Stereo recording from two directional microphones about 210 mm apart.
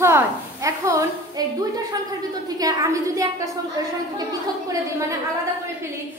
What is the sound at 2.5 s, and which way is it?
Speech, 15° right (ahead or behind).